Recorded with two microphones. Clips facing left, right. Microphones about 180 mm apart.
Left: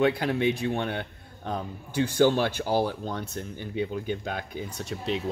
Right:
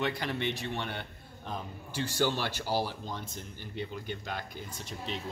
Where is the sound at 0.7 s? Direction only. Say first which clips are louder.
Left 8 dB; 55° left (ahead or behind); by 4.9 s 70° left (ahead or behind).